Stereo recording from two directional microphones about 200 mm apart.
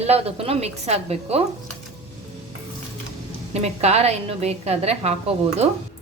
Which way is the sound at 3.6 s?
35° right (ahead or behind).